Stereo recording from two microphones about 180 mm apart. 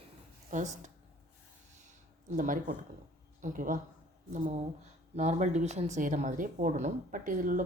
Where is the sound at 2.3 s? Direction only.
45° right (ahead or behind).